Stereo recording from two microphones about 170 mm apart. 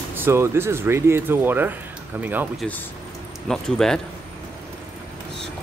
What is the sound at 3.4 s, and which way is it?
Speech, 5° left (ahead or behind).